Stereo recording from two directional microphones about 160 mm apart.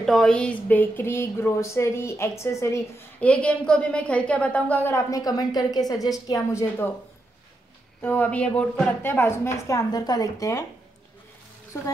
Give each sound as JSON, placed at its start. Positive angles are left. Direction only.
{"t": 0.0, "sound": "a woman's voice", "side_deg": 5}
{"t": 8.0, "sound": "speech", "side_deg": 10}